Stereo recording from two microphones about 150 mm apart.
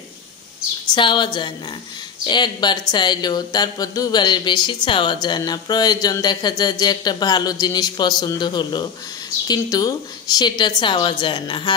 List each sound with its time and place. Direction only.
0.8 s a woman's voice: 30° left (ahead or behind)